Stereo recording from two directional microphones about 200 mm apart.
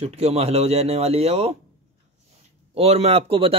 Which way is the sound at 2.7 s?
30° right (ahead or behind).